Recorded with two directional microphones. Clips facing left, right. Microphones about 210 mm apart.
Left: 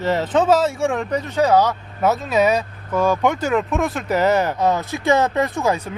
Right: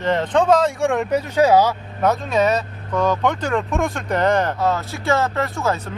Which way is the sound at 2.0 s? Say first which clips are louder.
Left 1 dB; 5° left (ahead or behind).